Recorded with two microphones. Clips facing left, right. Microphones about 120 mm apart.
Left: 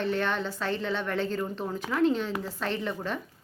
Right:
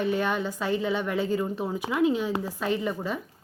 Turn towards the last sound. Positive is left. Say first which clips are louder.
# right 3 dB
turn(degrees=-5)  # may be behind; listen again after turning